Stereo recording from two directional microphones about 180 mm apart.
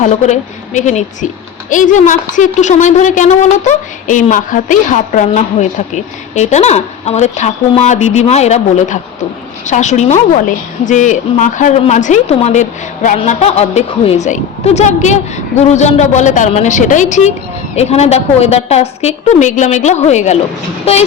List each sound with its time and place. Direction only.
0.0 s a woman's voice: 40° left (ahead or behind)